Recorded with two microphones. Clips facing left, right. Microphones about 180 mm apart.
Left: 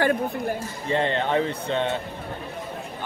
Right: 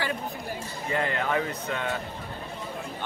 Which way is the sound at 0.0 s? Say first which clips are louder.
Left 9 dB; 55° left (ahead or behind).